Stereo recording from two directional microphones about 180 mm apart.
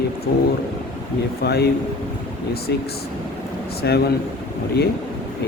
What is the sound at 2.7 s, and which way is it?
Speech, 65° left (ahead or behind).